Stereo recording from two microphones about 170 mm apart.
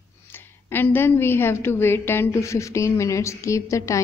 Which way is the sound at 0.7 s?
10° left (ahead or behind).